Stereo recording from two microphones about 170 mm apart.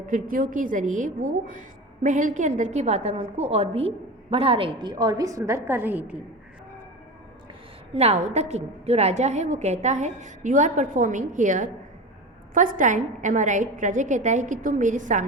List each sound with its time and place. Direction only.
0.1 s a woman's voice: 55° right (ahead or behind); by 6.1 s 10° right (ahead or behind)
7.9 s a woman's voice: 40° right (ahead or behind)